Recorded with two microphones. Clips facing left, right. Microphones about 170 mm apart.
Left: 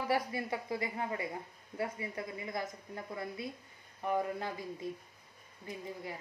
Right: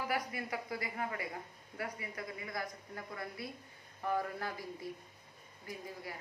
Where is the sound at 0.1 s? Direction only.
30° left (ahead or behind).